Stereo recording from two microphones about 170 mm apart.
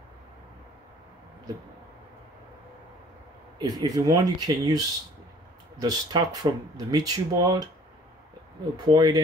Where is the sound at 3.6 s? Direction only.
25° right (ahead or behind).